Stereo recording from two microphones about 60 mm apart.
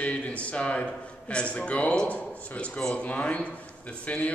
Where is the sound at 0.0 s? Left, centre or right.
Left.